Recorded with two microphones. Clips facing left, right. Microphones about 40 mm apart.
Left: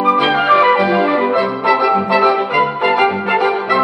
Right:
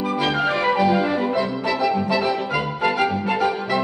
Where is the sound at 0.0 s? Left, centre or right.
Left.